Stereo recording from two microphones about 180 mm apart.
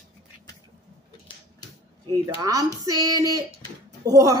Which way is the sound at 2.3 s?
20° right (ahead or behind).